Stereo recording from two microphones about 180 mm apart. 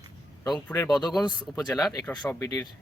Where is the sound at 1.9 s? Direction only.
15° left (ahead or behind).